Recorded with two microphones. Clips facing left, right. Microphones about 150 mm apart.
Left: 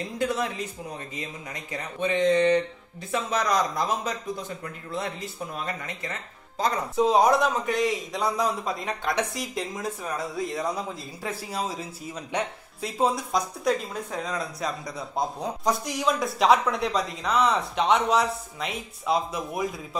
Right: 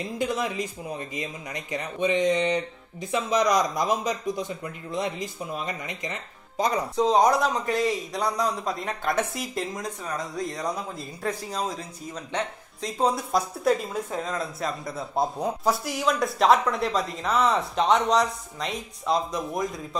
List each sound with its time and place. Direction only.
0.2 s speech: 15° right (ahead or behind)
7.0 s speech: 5° left (ahead or behind)